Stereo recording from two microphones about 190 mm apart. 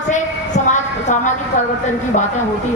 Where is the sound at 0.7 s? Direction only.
40° left (ahead or behind).